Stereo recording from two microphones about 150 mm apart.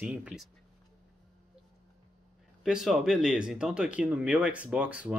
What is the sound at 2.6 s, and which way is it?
Speech, centre (ahead or behind).